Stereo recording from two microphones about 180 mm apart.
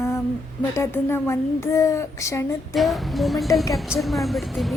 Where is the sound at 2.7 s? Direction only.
Centre (ahead or behind).